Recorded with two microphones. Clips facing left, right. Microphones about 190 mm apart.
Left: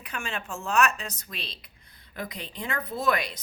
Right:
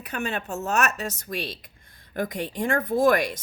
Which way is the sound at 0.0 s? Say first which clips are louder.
Right 6 dB; 40° right (ahead or behind).